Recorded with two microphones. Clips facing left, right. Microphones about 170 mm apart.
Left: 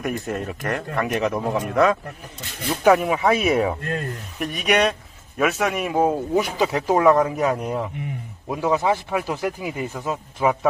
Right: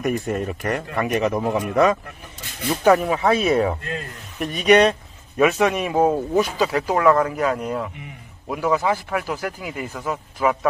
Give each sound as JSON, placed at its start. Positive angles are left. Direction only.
{"t": 0.0, "sound": "speech", "side_deg": 0}
{"t": 6.3, "sound": "speech", "side_deg": 20}